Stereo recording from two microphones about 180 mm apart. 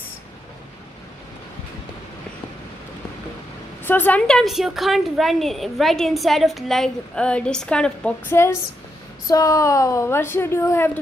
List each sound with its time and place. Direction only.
3.8 s a woman's voice: 10° left (ahead or behind)